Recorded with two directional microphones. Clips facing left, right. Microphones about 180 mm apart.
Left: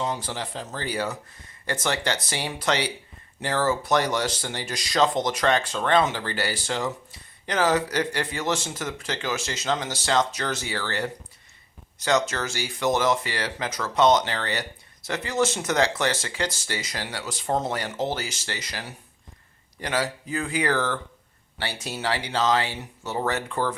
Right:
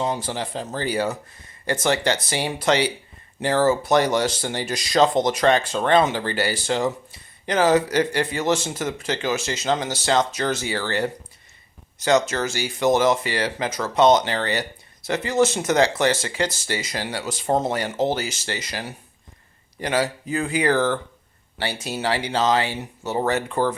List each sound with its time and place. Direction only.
0.0 s speech: 25° right (ahead or behind)
12.3 s speech: 25° right (ahead or behind)